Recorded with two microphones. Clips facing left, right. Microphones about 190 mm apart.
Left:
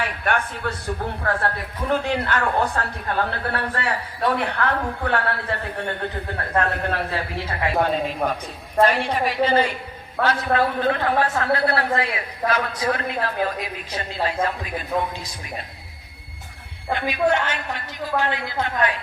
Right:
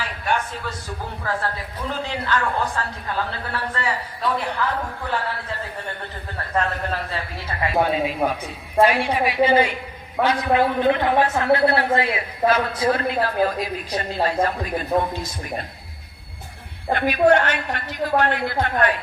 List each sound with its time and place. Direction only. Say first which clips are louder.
0.0 s a woman's voice: left 1 dB; 60° left (ahead or behind)
7.8 s a woman's voice: right 3 dB; 5° right (ahead or behind); by 14.3 s 40° right (ahead or behind)
16.9 s a man's voice: right 4 dB; 60° right (ahead or behind)